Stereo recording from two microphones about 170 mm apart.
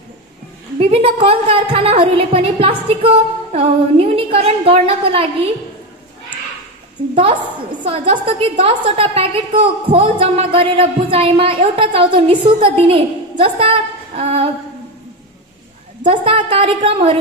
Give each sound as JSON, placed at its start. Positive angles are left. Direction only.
{"t": 0.7, "sound": "a woman's voice", "side_deg": -35}
{"t": 8.1, "sound": "a woman's voice", "side_deg": -30}
{"t": 16.0, "sound": "a woman's voice", "side_deg": -30}